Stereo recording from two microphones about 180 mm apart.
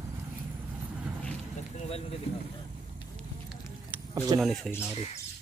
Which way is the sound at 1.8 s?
35° left (ahead or behind).